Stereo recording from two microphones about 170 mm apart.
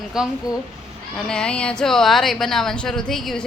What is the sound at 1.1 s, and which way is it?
A woman's voice, 5° left (ahead or behind).